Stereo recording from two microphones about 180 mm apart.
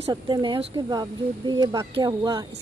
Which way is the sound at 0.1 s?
25° right (ahead or behind).